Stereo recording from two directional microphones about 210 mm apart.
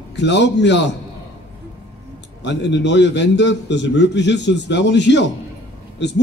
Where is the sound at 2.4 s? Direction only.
55° left (ahead or behind).